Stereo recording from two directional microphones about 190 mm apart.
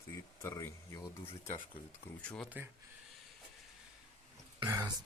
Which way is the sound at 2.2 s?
5° left (ahead or behind).